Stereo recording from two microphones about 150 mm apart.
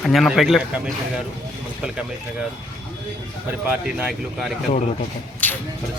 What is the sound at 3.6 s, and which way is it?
Speech, 10° right (ahead or behind).